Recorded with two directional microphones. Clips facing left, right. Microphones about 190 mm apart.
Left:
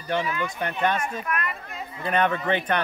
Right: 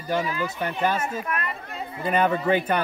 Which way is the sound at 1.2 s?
30° right (ahead or behind).